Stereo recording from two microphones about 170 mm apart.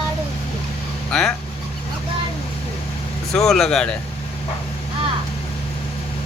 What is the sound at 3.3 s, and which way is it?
Speech, 5° left (ahead or behind).